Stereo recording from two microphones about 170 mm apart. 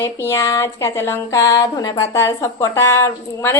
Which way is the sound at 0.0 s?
15° left (ahead or behind).